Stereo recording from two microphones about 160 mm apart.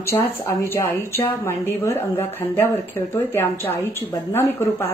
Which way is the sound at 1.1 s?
15° left (ahead or behind).